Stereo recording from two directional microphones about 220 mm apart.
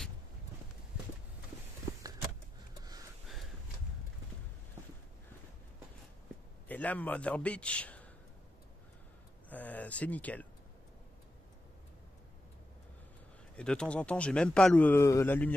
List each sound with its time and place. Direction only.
6.7 s a man's voice: 5° left (ahead or behind)
9.5 s a sound: 5° left (ahead or behind)
13.6 s a man's voice: 5° left (ahead or behind)